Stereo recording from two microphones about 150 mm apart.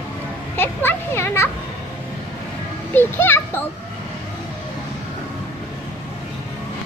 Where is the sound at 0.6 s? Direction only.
15° left (ahead or behind).